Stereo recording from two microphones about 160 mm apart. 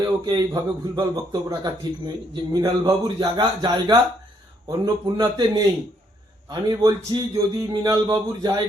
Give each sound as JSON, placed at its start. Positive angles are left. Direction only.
{"t": 0.0, "sound": "a man's voice", "side_deg": -25}
{"t": 5.0, "sound": "a man's voice", "side_deg": -25}